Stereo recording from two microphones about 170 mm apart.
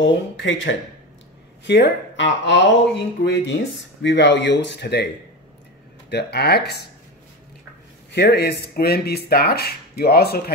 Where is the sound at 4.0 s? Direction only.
90° left.